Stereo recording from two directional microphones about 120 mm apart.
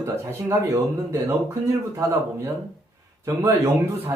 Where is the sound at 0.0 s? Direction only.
20° right (ahead or behind).